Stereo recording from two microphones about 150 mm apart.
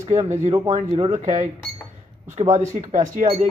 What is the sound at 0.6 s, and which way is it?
Speech, 45° right (ahead or behind).